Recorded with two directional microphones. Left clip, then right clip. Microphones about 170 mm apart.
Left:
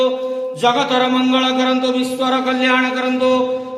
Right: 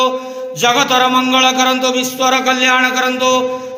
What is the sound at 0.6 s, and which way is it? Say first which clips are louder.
A man's voice: right 4 dB; 10° right (ahead or behind).